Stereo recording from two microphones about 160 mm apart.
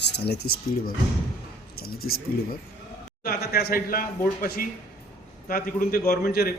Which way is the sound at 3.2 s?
75° left (ahead or behind).